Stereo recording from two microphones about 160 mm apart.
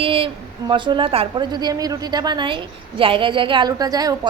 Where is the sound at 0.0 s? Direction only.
35° right (ahead or behind).